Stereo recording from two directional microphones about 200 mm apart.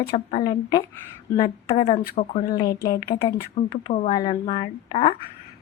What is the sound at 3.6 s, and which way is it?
Speech, 30° left (ahead or behind).